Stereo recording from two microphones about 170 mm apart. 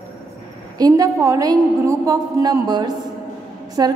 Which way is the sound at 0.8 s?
20° right (ahead or behind).